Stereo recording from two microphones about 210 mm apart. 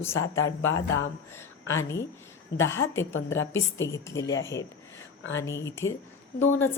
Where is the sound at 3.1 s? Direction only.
65° left (ahead or behind).